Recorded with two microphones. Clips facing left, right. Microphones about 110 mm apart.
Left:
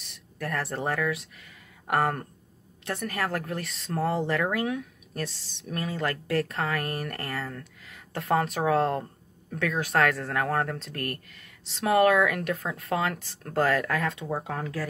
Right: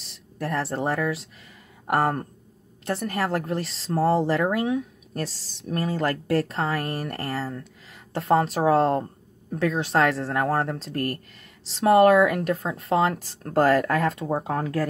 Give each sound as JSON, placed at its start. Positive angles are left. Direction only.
{"t": 0.0, "sound": "speech", "side_deg": -30}